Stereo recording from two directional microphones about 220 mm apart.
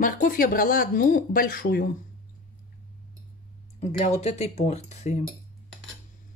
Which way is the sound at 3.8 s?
30° left (ahead or behind).